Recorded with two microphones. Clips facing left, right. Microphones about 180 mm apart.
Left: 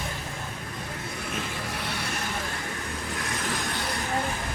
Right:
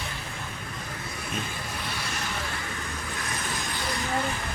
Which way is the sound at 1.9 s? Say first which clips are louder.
Left 2 dB; 60° left (ahead or behind).